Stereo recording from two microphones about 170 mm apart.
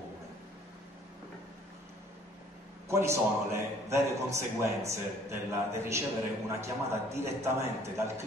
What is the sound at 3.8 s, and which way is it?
A man's voice, 15° right (ahead or behind).